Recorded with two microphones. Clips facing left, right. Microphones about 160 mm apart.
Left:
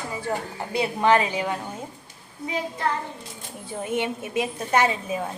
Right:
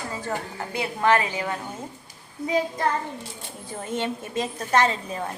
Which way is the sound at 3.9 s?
10° left (ahead or behind).